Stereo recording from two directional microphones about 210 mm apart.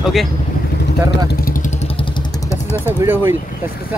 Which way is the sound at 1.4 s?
40° left (ahead or behind).